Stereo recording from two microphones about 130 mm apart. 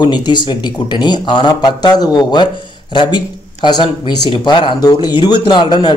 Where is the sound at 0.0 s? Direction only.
35° left (ahead or behind).